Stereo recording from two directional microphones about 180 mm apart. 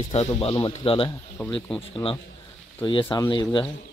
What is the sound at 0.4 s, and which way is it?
Speech, 30° left (ahead or behind).